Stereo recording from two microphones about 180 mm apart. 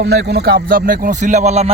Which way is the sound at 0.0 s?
65° right (ahead or behind).